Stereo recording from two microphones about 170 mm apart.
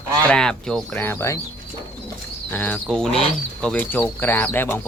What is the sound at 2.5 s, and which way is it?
Speech, 10° left (ahead or behind).